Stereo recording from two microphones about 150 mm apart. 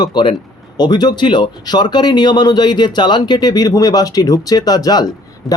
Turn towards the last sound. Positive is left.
turn(degrees=0)  # may be behind; listen again after turning